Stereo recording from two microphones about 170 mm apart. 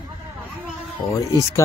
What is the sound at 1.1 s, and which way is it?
Speech, 20° left (ahead or behind).